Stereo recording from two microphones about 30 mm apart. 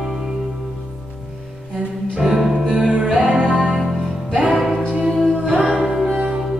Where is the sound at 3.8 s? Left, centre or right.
Centre.